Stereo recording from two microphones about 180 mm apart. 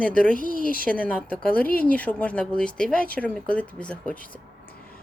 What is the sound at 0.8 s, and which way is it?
Speech, 10° left (ahead or behind).